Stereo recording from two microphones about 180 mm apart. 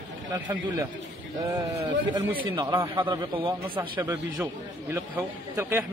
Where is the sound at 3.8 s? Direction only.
10° right (ahead or behind).